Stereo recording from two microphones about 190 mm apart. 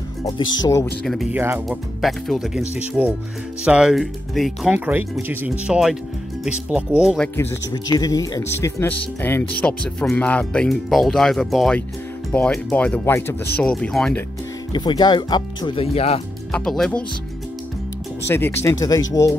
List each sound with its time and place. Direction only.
0.2 s speech: 20° left (ahead or behind)
1.0 s speech: centre (ahead or behind)
1.4 s speech: 10° right (ahead or behind)
2.0 s speech: centre (ahead or behind)
7.3 s speech: 20° left (ahead or behind); by 14.2 s 5° left (ahead or behind)
14.7 s speech: 25° left (ahead or behind)
16.5 s speech: 5° left (ahead or behind)
18.3 s speech: 15° left (ahead or behind)